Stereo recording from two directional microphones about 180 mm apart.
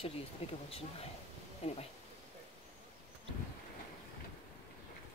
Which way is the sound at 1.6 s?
35° left (ahead or behind).